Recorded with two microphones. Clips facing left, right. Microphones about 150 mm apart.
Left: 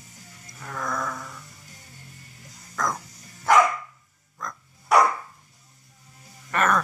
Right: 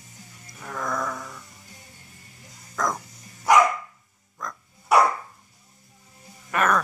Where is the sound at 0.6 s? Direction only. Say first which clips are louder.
Right 1 dB; 5° right (ahead or behind).